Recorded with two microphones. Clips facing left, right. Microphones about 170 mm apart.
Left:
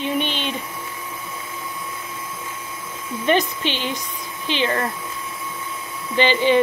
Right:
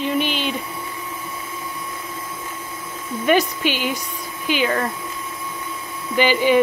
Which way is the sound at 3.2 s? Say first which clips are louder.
Right 2 dB; 10° right (ahead or behind).